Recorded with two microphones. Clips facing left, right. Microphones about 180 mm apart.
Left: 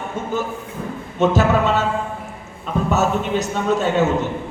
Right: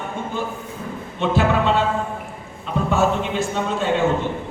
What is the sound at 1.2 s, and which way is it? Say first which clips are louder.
Speech: left 3 dB; 40° left (ahead or behind).